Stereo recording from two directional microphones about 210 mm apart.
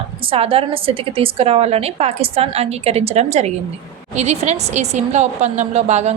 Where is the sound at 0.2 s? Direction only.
25° right (ahead or behind).